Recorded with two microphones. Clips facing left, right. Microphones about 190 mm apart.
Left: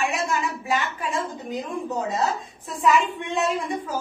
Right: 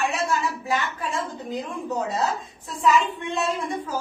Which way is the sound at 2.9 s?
15° left (ahead or behind).